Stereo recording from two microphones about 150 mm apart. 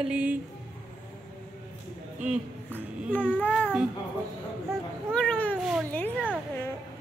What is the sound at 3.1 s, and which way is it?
Babbling, 10° left (ahead or behind).